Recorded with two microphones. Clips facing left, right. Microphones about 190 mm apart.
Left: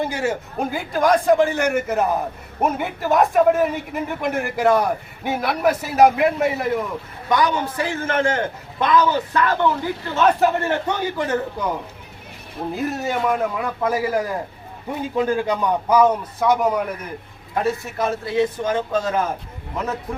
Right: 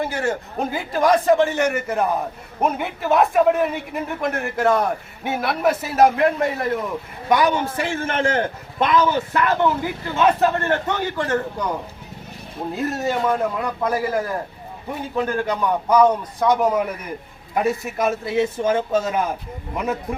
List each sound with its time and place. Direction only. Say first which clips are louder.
0.0 s a man's voice: even; 15° left (ahead or behind)
0.6 s a man's voice: even; centre (ahead or behind)
7.3 s a man's voice: right 2 dB; 20° right (ahead or behind)
10.2 s a man's voice: even; centre (ahead or behind)
10.5 s a man's voice: even; 10° left (ahead or behind)
12.7 s a man's voice: right 1 dB; centre (ahead or behind)
17.5 s a man's voice: right 1 dB; 15° right (ahead or behind)